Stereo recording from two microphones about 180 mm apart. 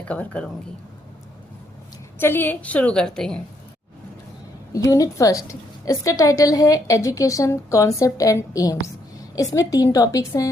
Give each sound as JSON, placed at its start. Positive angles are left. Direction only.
{"t": 0.1, "sound": "a woman's voice", "side_deg": 5}
{"t": 2.1, "sound": "a woman's voice", "side_deg": 10}
{"t": 4.9, "sound": "a woman's voice", "side_deg": 20}